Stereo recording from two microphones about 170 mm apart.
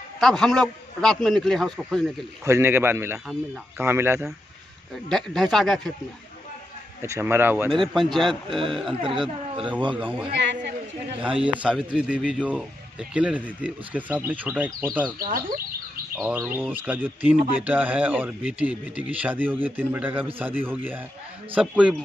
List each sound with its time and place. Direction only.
0.2 s a man's voice: centre (ahead or behind)
2.4 s speech: 15° right (ahead or behind)
5.1 s a man's voice: centre (ahead or behind)
7.0 s speech: 15° right (ahead or behind)
7.9 s a man's voice: centre (ahead or behind)
8.5 s speech: 30° right (ahead or behind)
10.3 s a man's voice: 90° right
11.1 s a man's voice: 30° right (ahead or behind)
11.6 s a man's voice: 5° right (ahead or behind)
15.1 s speech: 55° right (ahead or behind)
16.2 s speech: 10° right (ahead or behind)